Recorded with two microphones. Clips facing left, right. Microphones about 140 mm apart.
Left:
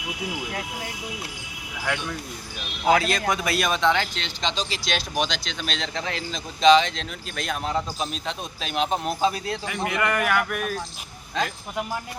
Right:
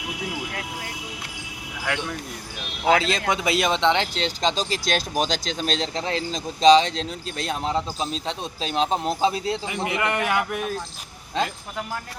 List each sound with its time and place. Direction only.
1.8 s speech: centre (ahead or behind)
2.9 s speech: 25° right (ahead or behind)